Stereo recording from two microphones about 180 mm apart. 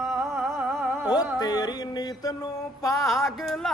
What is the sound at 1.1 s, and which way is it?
Mantra, 20° left (ahead or behind).